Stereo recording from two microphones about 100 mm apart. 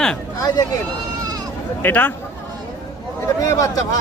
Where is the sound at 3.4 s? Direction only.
35° left (ahead or behind).